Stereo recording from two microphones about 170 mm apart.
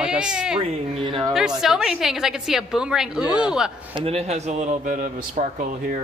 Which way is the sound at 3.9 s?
35° right (ahead or behind).